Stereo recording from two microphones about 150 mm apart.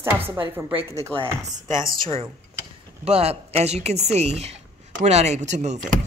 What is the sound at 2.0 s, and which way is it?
A woman's voice, 35° right (ahead or behind).